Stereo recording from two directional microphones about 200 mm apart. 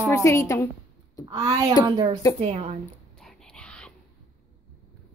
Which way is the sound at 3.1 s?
Centre (ahead or behind).